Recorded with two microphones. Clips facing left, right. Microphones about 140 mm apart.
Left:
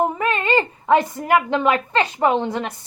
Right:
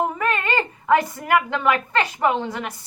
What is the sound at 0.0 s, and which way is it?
A woman's voice, 25° left (ahead or behind).